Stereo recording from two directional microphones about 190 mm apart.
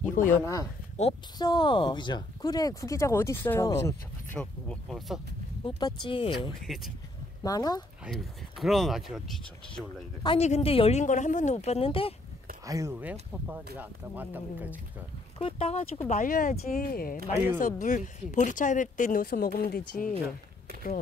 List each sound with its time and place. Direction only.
0.1 s speech: 40° left (ahead or behind)
0.4 s speech: 15° left (ahead or behind)
4.4 s speech: centre (ahead or behind)
5.8 s speech: 25° left (ahead or behind)
6.6 s speech: centre (ahead or behind)
7.4 s speech: 20° left (ahead or behind)
8.0 s speech: centre (ahead or behind)
10.2 s a woman's voice: 35° left (ahead or behind)
12.6 s speech: 15° right (ahead or behind)
15.3 s speech: 30° left (ahead or behind)
16.1 s speech: 45° left (ahead or behind)